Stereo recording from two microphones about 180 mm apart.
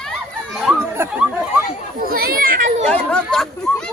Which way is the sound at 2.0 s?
55° right (ahead or behind).